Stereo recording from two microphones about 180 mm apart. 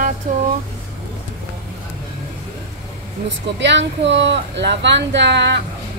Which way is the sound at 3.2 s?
75° right (ahead or behind).